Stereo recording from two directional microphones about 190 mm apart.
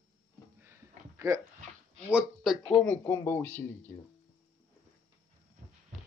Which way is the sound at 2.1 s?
Centre (ahead or behind).